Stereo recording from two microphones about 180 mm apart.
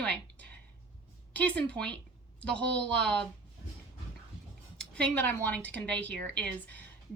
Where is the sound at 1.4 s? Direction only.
10° left (ahead or behind).